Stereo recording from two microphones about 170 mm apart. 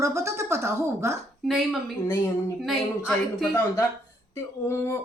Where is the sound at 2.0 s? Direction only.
15° left (ahead or behind).